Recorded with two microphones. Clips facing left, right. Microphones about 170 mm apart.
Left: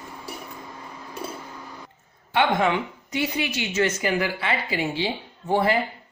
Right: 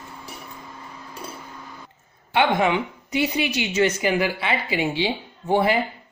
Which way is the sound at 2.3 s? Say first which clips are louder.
Right 1 dB; 15° right (ahead or behind).